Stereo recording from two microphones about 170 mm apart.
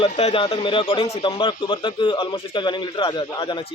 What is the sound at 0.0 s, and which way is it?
A man's voice, 35° left (ahead or behind).